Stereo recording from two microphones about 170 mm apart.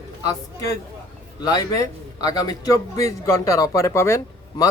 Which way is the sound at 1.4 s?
20° left (ahead or behind).